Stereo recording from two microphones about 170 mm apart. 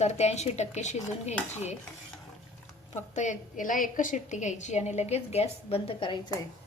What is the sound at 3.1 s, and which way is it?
A woman's voice, 45° left (ahead or behind).